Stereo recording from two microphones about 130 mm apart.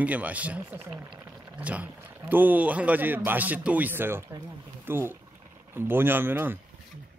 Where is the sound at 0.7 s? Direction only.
40° right (ahead or behind).